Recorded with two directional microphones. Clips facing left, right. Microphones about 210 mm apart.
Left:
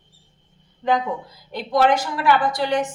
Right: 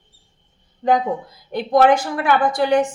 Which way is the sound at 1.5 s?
55° right (ahead or behind).